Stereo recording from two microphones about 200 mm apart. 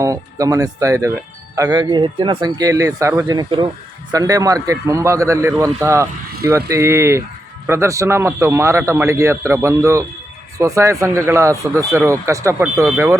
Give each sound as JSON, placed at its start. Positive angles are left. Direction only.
{"t": 0.0, "sound": "speech", "side_deg": -15}